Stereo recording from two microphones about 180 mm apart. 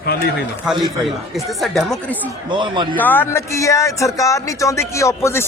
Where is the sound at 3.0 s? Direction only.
10° left (ahead or behind).